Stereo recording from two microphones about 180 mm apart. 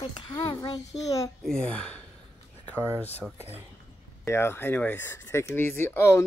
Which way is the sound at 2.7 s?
10° right (ahead or behind).